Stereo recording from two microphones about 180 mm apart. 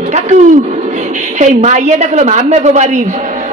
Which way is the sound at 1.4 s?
40° right (ahead or behind).